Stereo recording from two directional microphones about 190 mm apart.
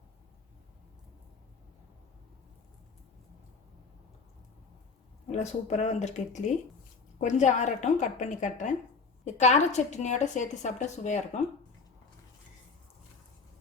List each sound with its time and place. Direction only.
5.3 s a woman's voice: 35° left (ahead or behind)